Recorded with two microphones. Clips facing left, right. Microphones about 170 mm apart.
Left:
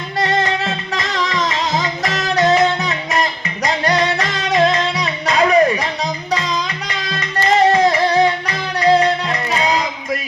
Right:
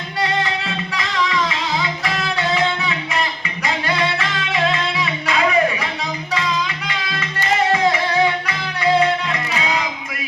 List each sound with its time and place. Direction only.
0.2 s music: 40° left (ahead or behind)